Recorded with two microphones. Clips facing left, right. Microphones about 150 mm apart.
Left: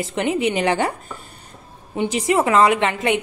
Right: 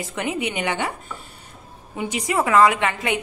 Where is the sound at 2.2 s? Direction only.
25° left (ahead or behind).